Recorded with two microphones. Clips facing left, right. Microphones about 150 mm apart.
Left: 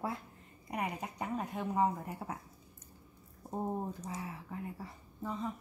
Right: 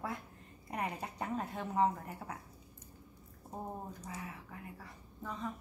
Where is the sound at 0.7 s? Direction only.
15° left (ahead or behind).